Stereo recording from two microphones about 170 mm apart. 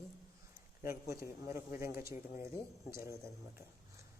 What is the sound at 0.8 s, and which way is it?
Speech, 15° right (ahead or behind).